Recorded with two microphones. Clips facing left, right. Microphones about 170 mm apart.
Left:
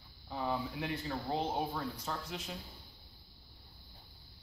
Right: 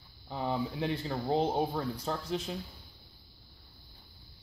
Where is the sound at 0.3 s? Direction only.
30° right (ahead or behind).